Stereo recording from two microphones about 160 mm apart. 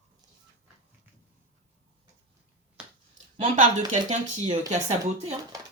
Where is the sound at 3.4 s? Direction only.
50° right (ahead or behind).